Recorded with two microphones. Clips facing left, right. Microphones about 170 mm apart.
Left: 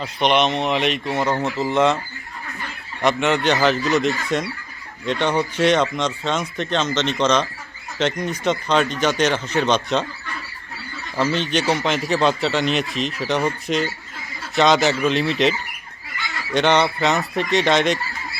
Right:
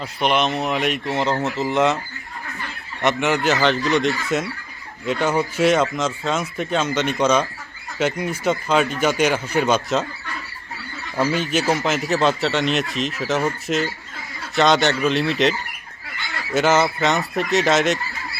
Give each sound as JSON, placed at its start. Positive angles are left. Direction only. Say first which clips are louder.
{"t": 0.0, "sound": "a man's voice", "louder": "left 2 dB", "side_deg": -5}
{"t": 3.0, "sound": "speech", "louder": "left 1 dB", "side_deg": -20}
{"t": 3.2, "sound": "a man's voice", "louder": "left 1 dB", "side_deg": 0}
{"t": 11.2, "sound": "a man's voice", "louder": "even", "side_deg": -10}
{"t": 16.6, "sound": "a man's voice", "louder": "even", "side_deg": -5}